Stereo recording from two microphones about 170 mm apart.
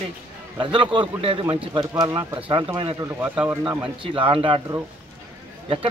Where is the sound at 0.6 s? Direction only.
30° right (ahead or behind).